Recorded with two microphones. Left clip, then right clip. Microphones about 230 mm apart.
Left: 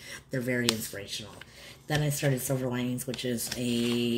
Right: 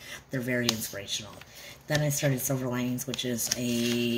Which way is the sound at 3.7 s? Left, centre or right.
Right.